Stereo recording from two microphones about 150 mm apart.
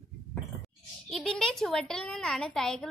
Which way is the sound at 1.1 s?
5° left (ahead or behind).